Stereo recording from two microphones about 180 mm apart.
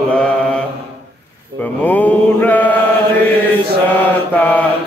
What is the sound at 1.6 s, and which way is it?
Mantra, 10° left (ahead or behind).